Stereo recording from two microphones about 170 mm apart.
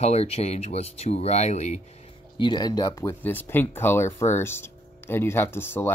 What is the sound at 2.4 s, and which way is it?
Speech, 25° left (ahead or behind).